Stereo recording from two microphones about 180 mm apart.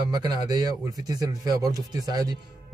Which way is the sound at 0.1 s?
25° right (ahead or behind).